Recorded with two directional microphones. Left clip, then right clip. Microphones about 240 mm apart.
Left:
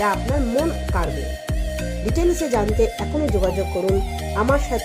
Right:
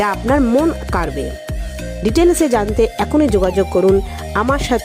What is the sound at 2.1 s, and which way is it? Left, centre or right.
Speech, right.